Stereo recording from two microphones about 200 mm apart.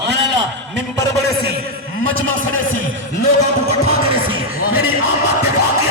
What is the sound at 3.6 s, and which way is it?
Music, 30° right (ahead or behind).